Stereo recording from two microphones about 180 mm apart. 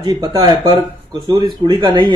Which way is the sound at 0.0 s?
25° right (ahead or behind).